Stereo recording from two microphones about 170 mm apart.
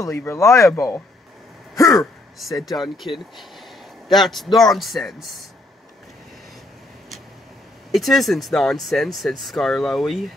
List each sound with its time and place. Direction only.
0.0 s speech: 15° left (ahead or behind)
2.4 s speech: centre (ahead or behind)
4.1 s speech: centre (ahead or behind)
7.9 s speech: centre (ahead or behind)